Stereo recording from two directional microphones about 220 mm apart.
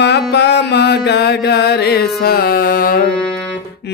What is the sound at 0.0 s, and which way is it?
Mantra, 50° left (ahead or behind).